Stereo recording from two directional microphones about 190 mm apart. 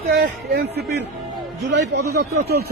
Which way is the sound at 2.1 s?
55° right (ahead or behind).